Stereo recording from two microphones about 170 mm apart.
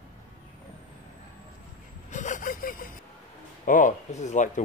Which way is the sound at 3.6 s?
50° left (ahead or behind).